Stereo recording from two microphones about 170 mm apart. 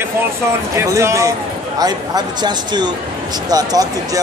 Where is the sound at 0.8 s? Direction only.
15° right (ahead or behind).